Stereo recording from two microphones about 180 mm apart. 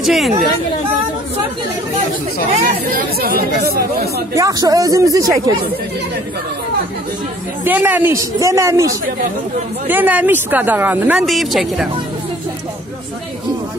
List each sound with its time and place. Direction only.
0.0 s speech: centre (ahead or behind)
2.6 s speech: 50° right (ahead or behind)
4.4 s speech: 20° right (ahead or behind)
7.6 s speech: 10° right (ahead or behind)